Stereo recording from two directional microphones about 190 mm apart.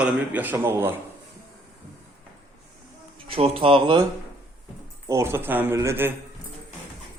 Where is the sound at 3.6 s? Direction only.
30° right (ahead or behind).